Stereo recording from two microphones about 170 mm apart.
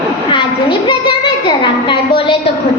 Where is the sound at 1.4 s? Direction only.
30° left (ahead or behind).